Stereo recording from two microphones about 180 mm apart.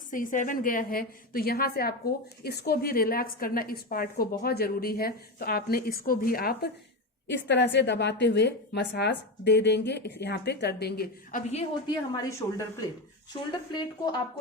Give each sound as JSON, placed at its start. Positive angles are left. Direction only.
{"t": 0.1, "sound": "a woman's voice", "side_deg": 45}
{"t": 7.3, "sound": "a woman's voice", "side_deg": 75}
{"t": 11.9, "sound": "speech", "side_deg": 20}
{"t": 13.7, "sound": "speech", "side_deg": 25}